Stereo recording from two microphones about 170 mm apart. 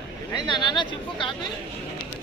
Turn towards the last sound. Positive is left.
turn(degrees=30)  # may be behind; listen again after turning